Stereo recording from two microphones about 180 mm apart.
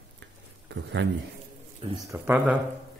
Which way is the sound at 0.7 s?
80° right.